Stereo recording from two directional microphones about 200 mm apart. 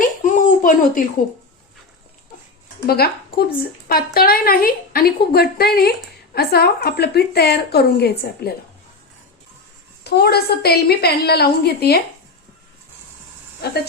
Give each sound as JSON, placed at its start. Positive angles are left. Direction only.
{"t": 0.0, "sound": "a sound", "side_deg": 40}
{"t": 2.8, "sound": "speech", "side_deg": 50}
{"t": 10.0, "sound": "speech", "side_deg": 50}